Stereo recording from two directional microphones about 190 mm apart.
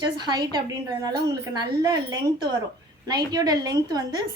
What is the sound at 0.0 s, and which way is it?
A woman's voice, 20° right (ahead or behind).